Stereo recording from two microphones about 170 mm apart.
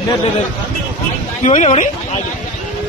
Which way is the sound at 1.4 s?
40° left (ahead or behind).